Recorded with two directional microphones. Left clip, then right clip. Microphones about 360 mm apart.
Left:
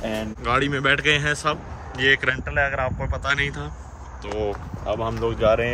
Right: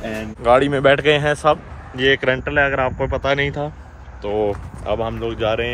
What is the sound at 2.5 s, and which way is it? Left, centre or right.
Speech, left.